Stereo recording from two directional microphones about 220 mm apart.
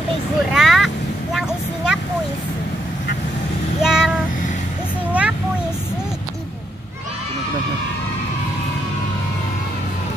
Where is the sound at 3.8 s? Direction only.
5° right (ahead or behind).